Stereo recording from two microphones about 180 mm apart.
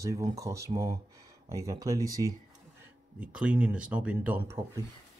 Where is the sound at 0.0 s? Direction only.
20° right (ahead or behind).